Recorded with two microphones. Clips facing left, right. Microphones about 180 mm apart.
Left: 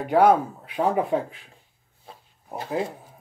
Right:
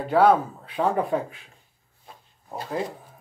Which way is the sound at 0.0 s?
15° left (ahead or behind).